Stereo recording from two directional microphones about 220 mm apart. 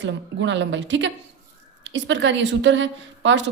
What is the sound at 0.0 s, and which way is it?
A woman's voice, 55° right (ahead or behind).